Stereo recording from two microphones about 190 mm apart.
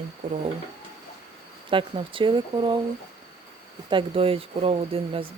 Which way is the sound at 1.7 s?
25° right (ahead or behind).